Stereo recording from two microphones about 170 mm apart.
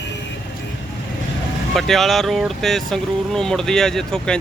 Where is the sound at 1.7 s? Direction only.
Centre (ahead or behind).